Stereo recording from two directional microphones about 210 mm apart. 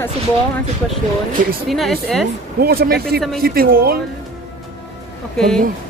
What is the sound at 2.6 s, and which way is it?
Speech, 45° right (ahead or behind).